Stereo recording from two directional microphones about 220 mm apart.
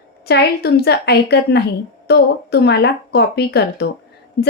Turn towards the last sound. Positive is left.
turn(degrees=50)  # may be behind; listen again after turning